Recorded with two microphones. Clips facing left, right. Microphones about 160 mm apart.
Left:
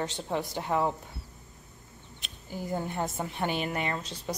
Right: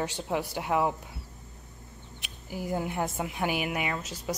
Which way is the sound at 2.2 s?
10° right (ahead or behind).